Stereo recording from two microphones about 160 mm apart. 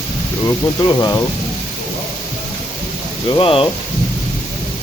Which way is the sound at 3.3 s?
35° left (ahead or behind).